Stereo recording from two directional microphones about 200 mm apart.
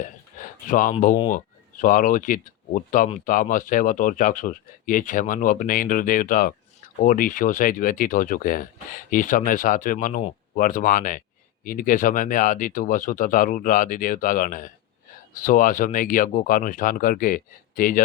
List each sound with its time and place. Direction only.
0.3 s speech: 40° left (ahead or behind)